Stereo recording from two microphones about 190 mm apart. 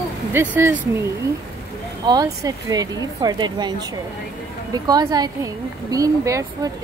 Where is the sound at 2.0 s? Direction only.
20° right (ahead or behind).